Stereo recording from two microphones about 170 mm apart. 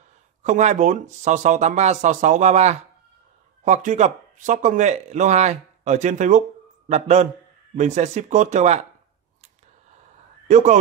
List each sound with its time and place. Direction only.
0.4 s a man's voice: 45° right (ahead or behind)
10.5 s speech: 45° right (ahead or behind)